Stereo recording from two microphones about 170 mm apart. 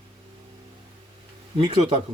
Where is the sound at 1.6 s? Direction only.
30° right (ahead or behind).